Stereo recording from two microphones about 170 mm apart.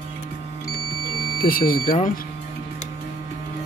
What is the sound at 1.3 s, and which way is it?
Speech, 60° left (ahead or behind).